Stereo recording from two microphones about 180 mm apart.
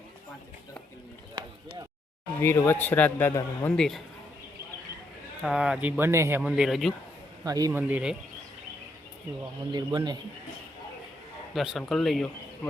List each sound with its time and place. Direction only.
1.4 s a sound: 25° right (ahead or behind)
2.4 s a man's voice: 15° left (ahead or behind)
5.4 s speech: 5° right (ahead or behind)
7.4 s speech: 20° right (ahead or behind)
9.7 s a man's voice: 25° right (ahead or behind)
11.5 s speech: centre (ahead or behind)